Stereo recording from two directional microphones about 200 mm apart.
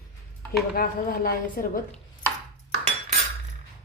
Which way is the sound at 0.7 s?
45° left (ahead or behind).